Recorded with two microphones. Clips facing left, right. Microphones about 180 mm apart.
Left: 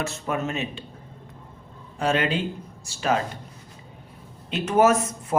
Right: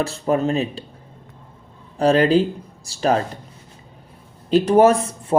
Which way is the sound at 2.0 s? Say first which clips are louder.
Right 9 dB; 35° right (ahead or behind).